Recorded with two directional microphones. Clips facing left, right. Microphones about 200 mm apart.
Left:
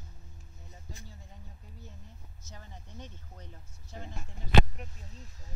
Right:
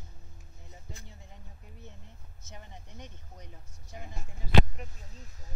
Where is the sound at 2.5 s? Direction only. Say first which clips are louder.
Right 1 dB; 20° right (ahead or behind).